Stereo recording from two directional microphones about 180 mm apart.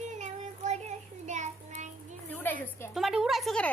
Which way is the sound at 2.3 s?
10° left (ahead or behind).